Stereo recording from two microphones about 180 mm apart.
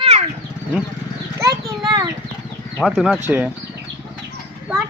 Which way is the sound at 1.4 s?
20° right (ahead or behind).